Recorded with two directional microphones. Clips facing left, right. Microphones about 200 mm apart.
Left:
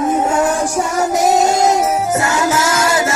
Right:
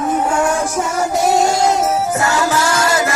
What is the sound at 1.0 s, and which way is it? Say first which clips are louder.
Music: left 1 dB; 20° left (ahead or behind).